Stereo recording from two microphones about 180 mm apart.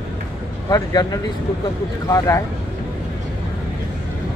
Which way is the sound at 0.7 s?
20° left (ahead or behind).